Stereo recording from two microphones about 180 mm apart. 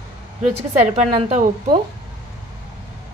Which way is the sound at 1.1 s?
30° right (ahead or behind).